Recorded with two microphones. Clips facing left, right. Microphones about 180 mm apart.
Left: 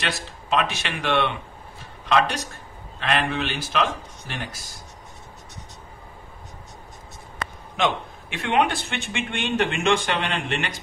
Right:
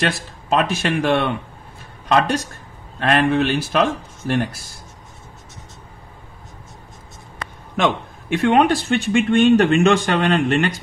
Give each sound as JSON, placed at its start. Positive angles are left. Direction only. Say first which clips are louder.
{"t": 0.0, "sound": "a man's voice", "louder": "right 7 dB", "side_deg": -45}
{"t": 7.7, "sound": "a man's voice", "louder": "right 4 dB", "side_deg": -45}